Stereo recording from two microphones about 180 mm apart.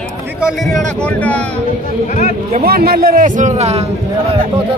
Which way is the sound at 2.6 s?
60° right (ahead or behind).